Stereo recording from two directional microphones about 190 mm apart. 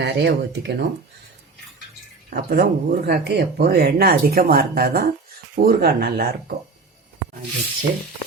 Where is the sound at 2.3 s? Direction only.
50° right (ahead or behind).